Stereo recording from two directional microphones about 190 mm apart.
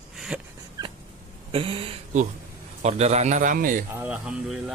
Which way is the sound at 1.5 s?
30° right (ahead or behind).